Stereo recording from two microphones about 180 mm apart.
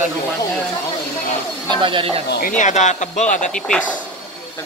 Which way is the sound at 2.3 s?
50° left (ahead or behind).